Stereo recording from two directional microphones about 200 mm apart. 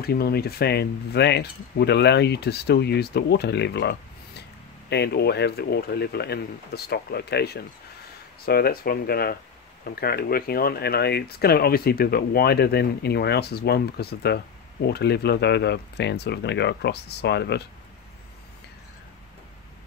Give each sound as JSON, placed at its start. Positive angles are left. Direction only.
{"t": 0.0, "sound": "speech", "side_deg": 50}